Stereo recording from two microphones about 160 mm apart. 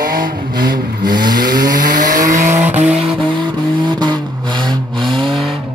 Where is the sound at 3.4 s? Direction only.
25° right (ahead or behind).